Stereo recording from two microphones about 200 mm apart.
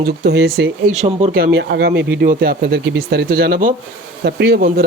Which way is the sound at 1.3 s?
50° right (ahead or behind).